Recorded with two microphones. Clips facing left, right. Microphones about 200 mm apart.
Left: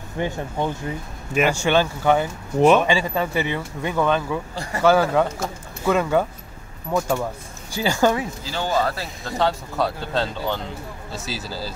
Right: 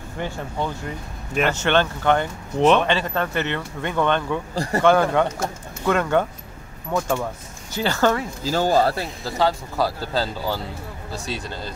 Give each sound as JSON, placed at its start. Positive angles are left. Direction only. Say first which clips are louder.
{"t": 0.2, "sound": "speech", "louder": "left 3 dB", "side_deg": 15}
{"t": 8.5, "sound": "speech", "louder": "right 5 dB", "side_deg": -40}
{"t": 9.2, "sound": "speech", "louder": "even", "side_deg": 0}